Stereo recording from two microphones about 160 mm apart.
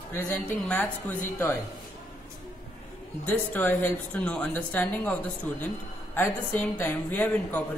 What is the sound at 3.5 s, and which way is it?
A woman's voice, 10° left (ahead or behind).